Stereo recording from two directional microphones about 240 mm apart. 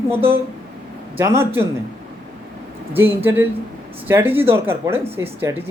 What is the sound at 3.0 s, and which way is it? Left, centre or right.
Speech, centre.